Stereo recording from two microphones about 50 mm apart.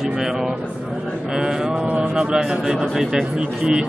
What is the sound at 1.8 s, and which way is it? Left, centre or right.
Speech, right.